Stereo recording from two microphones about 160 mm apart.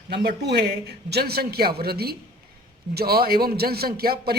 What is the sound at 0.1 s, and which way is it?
Speech, 90° right.